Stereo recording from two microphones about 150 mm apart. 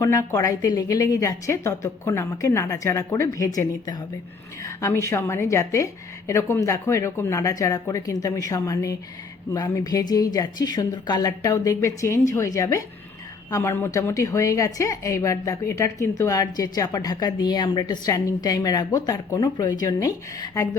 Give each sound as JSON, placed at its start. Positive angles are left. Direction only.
{"t": 0.0, "sound": "a woman's voice", "side_deg": 20}